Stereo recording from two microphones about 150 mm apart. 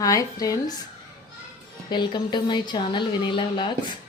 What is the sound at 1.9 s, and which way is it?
Speech, 30° left (ahead or behind).